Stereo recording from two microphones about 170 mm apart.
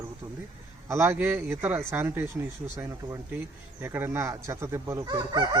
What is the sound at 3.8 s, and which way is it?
A man's voice, 15° right (ahead or behind).